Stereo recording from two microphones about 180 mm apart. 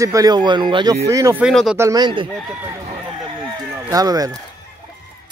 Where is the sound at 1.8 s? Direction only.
20° right (ahead or behind).